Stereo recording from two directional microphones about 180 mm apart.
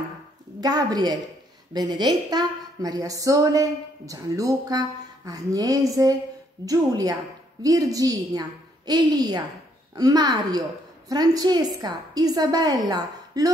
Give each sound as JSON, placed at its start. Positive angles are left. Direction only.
{"t": 0.6, "sound": "a woman's voice", "side_deg": -20}